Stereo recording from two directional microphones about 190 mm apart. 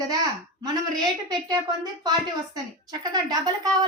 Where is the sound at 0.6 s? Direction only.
20° right (ahead or behind).